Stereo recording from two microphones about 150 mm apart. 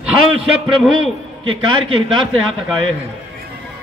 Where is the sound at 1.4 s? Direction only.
35° right (ahead or behind).